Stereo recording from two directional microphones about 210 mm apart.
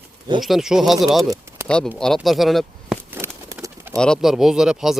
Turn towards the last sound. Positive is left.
turn(degrees=0)  # may be behind; listen again after turning